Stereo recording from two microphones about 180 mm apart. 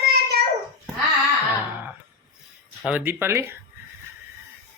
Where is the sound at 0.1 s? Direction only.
65° right (ahead or behind).